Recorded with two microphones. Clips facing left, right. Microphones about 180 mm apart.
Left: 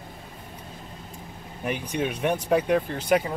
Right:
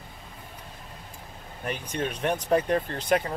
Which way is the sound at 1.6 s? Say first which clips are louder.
Left 3 dB; 15° left (ahead or behind).